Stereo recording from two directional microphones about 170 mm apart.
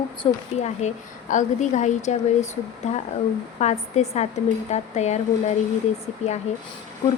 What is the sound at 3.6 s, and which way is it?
Speech, 40° left (ahead or behind).